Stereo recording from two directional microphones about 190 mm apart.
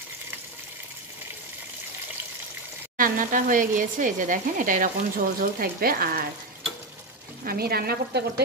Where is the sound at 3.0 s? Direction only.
45° right (ahead or behind).